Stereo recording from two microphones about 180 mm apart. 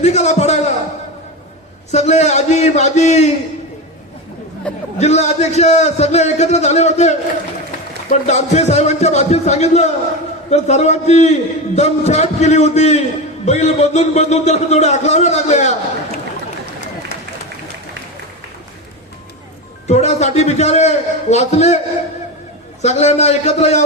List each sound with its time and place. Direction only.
0.0 s a sound: 40° left (ahead or behind)
1.9 s a man's voice: 40° left (ahead or behind)
4.9 s a man's voice: 40° left (ahead or behind)
19.9 s a man's voice: 40° left (ahead or behind)
22.8 s a man's voice: 40° left (ahead or behind)